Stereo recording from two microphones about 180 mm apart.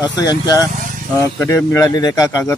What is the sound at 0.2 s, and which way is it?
Speech, 20° left (ahead or behind).